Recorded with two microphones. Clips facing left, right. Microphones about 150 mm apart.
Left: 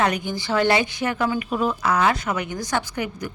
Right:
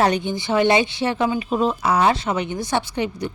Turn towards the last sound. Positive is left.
turn(degrees=-25)  # may be behind; listen again after turning